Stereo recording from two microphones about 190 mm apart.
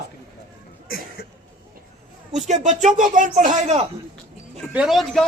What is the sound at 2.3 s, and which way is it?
Speech, 40° right (ahead or behind).